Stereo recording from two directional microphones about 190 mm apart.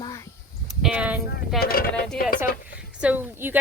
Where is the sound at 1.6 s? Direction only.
50° left (ahead or behind).